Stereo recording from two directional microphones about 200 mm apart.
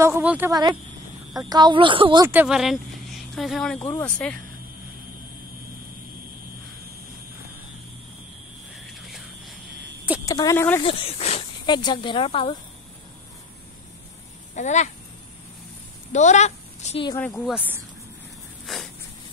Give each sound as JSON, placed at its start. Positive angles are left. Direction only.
{"t": 0.0, "sound": "speech", "side_deg": -10}
{"t": 0.5, "sound": "speech", "side_deg": -20}
{"t": 2.2, "sound": "a woman's voice", "side_deg": -5}
{"t": 8.8, "sound": "a sound", "side_deg": 0}
{"t": 10.2, "sound": "speech", "side_deg": 15}
{"t": 10.8, "sound": "speech", "side_deg": 30}
{"t": 14.5, "sound": "speech", "side_deg": 35}
{"t": 16.1, "sound": "a woman's voice", "side_deg": 35}
{"t": 17.3, "sound": "speech", "side_deg": 0}
{"t": 18.7, "sound": "a sound", "side_deg": 0}